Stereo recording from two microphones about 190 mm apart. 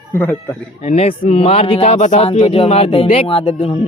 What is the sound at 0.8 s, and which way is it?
Speech, 30° left (ahead or behind).